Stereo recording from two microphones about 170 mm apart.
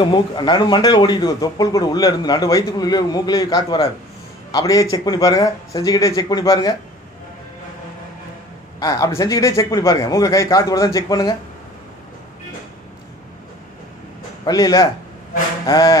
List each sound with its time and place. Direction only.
0.0 s speech: 25° left (ahead or behind)
8.7 s speech: 20° left (ahead or behind)
14.4 s speech: 20° left (ahead or behind)